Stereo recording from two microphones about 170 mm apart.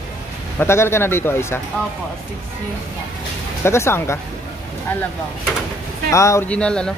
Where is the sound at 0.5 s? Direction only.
15° left (ahead or behind).